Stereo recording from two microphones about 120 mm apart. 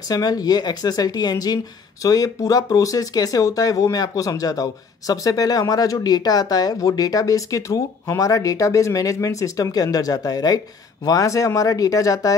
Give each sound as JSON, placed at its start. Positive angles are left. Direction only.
{"t": 0.1, "sound": "speech", "side_deg": 30}